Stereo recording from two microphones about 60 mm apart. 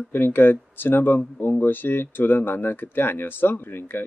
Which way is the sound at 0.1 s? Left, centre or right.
Left.